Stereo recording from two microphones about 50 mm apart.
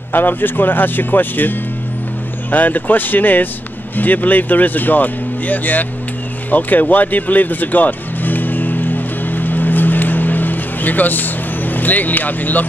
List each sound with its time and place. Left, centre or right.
0.1 s speech: left
6.5 s music: left